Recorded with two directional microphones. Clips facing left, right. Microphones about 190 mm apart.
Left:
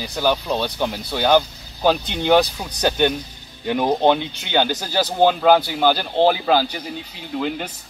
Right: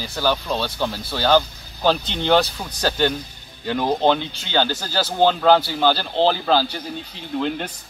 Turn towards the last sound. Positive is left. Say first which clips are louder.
# right 1 dB
turn(degrees=5)  # may be behind; listen again after turning